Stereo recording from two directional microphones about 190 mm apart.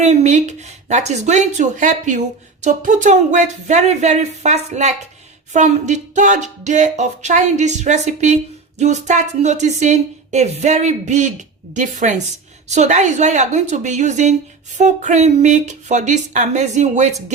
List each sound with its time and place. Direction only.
0.0 s speech: 35° right (ahead or behind)